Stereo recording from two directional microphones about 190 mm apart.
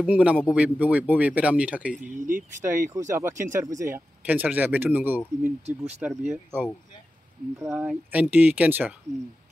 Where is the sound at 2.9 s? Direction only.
15° right (ahead or behind).